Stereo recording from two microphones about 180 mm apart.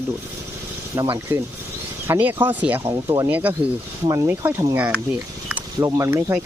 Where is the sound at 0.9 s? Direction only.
20° right (ahead or behind).